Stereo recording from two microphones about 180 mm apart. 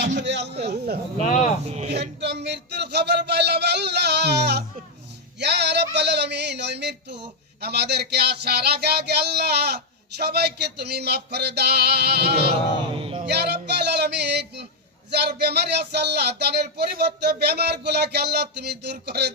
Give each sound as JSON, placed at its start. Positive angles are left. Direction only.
{"t": 0.0, "sound": "a man's voice", "side_deg": -85}
{"t": 1.6, "sound": "speech", "side_deg": -35}
{"t": 1.9, "sound": "speech", "side_deg": -70}
{"t": 5.4, "sound": "a sound", "side_deg": -70}
{"t": 13.0, "sound": "speech", "side_deg": -30}
{"t": 13.2, "sound": "music", "side_deg": -65}
{"t": 15.1, "sound": "a sound", "side_deg": -65}